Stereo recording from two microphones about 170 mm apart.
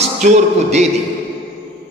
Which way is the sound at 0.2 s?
45° right (ahead or behind).